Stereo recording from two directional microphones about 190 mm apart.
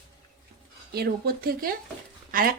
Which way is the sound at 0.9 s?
55° right (ahead or behind).